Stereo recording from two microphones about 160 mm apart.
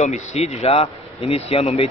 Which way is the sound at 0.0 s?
45° left (ahead or behind).